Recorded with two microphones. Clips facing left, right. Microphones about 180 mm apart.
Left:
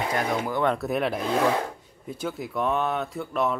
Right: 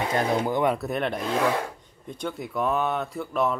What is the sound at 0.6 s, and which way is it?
Speech, 5° right (ahead or behind).